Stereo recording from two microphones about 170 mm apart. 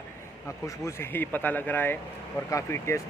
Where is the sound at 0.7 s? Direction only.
15° left (ahead or behind).